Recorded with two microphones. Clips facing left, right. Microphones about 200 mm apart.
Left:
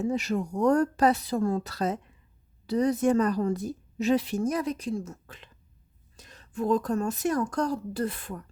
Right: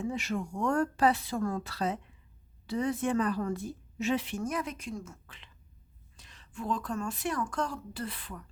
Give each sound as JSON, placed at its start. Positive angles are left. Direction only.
{"t": 0.0, "sound": "a woman's voice", "side_deg": 40}